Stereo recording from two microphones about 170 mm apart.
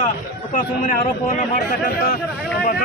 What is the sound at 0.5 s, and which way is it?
Speech, 55° left (ahead or behind).